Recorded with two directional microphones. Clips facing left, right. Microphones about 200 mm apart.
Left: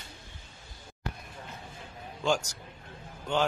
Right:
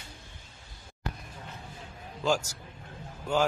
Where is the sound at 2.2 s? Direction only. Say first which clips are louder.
Right 1 dB; 5° right (ahead or behind).